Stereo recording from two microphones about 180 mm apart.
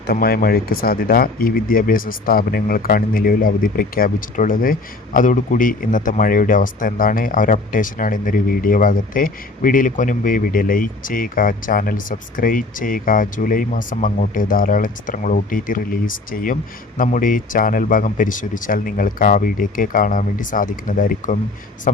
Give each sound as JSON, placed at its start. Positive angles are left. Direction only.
{"t": 0.1, "sound": "speech", "side_deg": 55}